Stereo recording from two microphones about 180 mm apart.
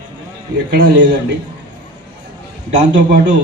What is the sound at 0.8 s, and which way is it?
Speech, 75° right (ahead or behind).